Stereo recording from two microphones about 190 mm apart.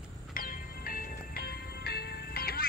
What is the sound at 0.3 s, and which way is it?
Music, 50° left (ahead or behind).